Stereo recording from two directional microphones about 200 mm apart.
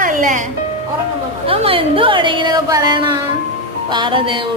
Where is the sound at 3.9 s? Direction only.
25° right (ahead or behind).